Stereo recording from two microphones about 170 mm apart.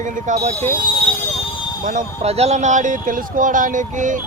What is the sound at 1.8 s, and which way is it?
Speech, 45° right (ahead or behind).